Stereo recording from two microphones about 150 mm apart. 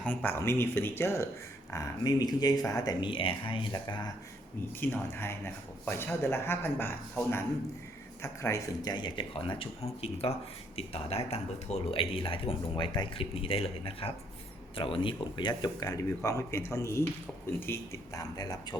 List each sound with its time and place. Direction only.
0.0 s speech: 10° left (ahead or behind); by 4.1 s 30° left (ahead or behind)
4.7 s speech: 15° left (ahead or behind)